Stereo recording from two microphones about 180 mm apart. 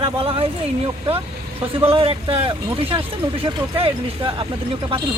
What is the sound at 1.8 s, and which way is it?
Speech, 30° right (ahead or behind).